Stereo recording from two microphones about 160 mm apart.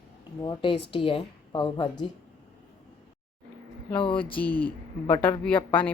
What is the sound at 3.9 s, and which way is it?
Speech, 35° left (ahead or behind).